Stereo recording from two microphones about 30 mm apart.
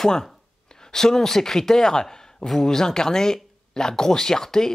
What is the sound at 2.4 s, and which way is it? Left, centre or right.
Speech, centre.